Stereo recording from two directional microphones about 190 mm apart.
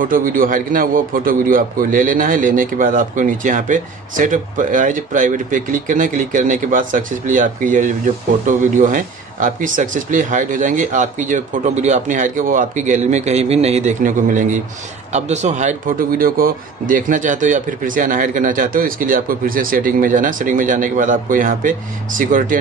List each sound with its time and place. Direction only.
0.0 s a man's voice: 45° right (ahead or behind)